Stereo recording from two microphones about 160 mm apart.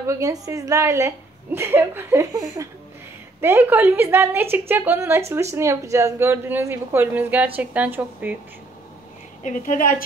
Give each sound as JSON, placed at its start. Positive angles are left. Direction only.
{"t": 0.0, "sound": "a woman's voice", "side_deg": -20}
{"t": 9.4, "sound": "a woman's voice", "side_deg": 55}